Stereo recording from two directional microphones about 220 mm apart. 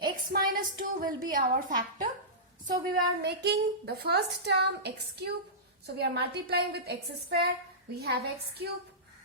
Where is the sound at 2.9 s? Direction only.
50° right (ahead or behind).